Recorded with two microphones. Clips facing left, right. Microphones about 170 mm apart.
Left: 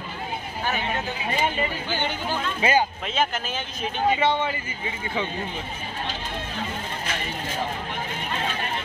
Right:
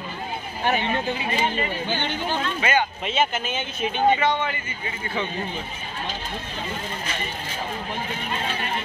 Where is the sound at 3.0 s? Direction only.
5° right (ahead or behind).